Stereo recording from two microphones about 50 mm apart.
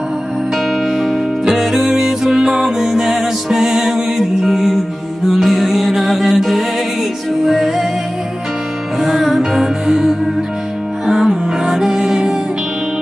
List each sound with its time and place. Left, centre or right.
0.8 s music: centre
9.0 s music: centre